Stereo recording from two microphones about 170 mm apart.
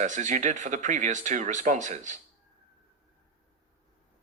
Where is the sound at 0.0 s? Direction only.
45° right (ahead or behind).